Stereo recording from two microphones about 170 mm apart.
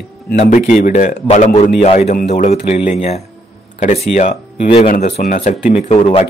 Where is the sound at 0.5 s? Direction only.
50° left (ahead or behind).